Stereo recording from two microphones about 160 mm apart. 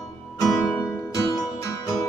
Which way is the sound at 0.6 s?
20° left (ahead or behind).